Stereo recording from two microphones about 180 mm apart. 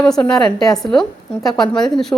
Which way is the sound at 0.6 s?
20° left (ahead or behind).